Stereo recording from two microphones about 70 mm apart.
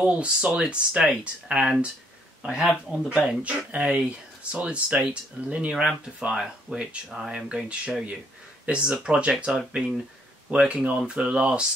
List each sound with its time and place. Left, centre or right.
0.0 s speech: centre
2.7 s speech: centre
3.4 s speech: centre
10.5 s speech: centre